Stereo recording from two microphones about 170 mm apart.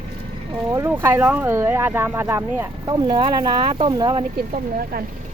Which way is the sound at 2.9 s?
25° right (ahead or behind).